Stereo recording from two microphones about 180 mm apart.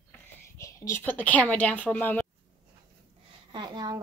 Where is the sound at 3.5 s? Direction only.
25° right (ahead or behind).